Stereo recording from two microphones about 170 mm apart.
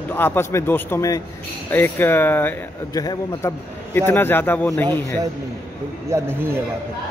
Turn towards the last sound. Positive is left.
turn(degrees=-15)  # may be behind; listen again after turning